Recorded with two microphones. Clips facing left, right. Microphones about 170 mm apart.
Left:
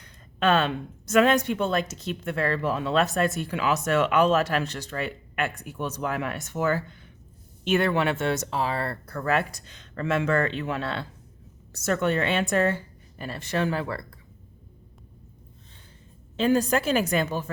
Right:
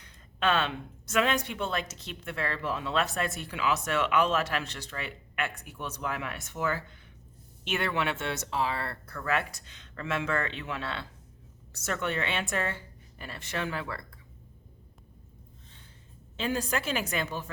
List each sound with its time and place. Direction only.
0.0 s a woman's voice: 45° left (ahead or behind)
16.4 s speech: 45° left (ahead or behind)